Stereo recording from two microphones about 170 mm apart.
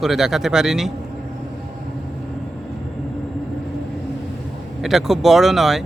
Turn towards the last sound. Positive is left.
turn(degrees=0)  # may be behind; listen again after turning